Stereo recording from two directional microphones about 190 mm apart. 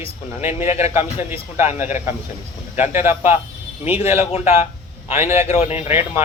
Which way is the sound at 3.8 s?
30° left (ahead or behind).